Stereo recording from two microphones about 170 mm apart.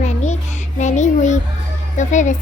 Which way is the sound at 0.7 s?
45° left (ahead or behind).